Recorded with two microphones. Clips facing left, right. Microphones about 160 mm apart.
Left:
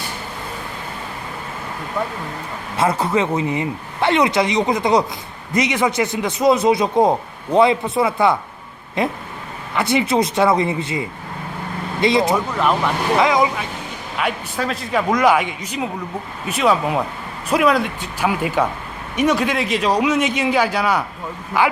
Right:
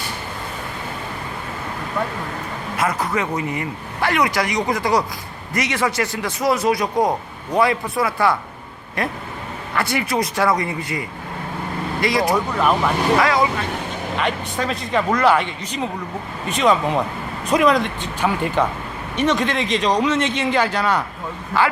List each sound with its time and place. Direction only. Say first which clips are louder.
2.7 s a man's voice: left 4 dB; 30° left (ahead or behind)
12.3 s speech: even; centre (ahead or behind)
13.1 s a man's voice: left 1 dB; 20° left (ahead or behind)
14.2 s a man's voice: left 1 dB; 5° left (ahead or behind)